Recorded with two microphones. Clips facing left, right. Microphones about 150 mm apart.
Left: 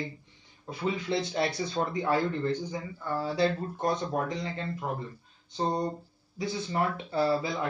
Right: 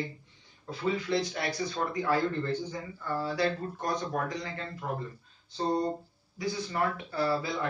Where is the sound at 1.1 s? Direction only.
25° left (ahead or behind).